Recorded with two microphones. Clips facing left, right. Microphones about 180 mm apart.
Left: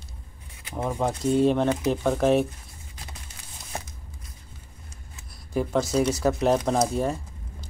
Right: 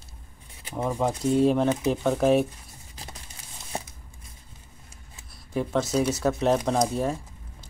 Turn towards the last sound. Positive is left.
turn(degrees=0)  # may be behind; listen again after turning